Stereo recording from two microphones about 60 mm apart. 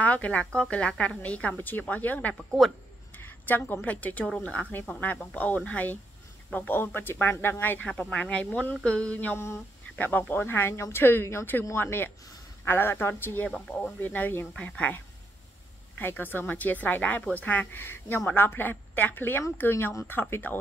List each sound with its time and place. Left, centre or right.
0.0 s a woman's voice: left
3.1 s a sound: left
3.8 s a woman's voice: left
7.9 s a woman's voice: centre
16.0 s a woman's voice: left
17.8 s speech: left
20.1 s speech: left